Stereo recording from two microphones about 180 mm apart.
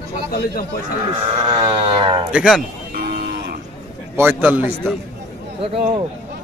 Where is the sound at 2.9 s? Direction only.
60° right (ahead or behind).